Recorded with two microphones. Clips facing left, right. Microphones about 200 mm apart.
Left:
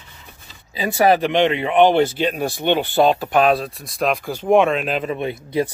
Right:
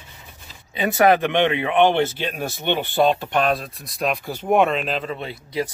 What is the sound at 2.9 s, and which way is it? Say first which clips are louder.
Speech: left 1 dB; 40° left (ahead or behind).